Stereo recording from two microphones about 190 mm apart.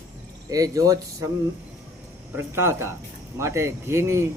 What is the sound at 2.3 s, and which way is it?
Speech, 15° right (ahead or behind).